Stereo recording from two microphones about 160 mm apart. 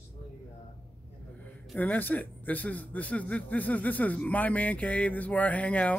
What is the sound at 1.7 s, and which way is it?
A man's voice, 10° left (ahead or behind).